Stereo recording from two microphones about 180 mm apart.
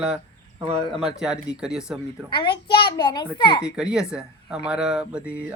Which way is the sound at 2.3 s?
25° left (ahead or behind).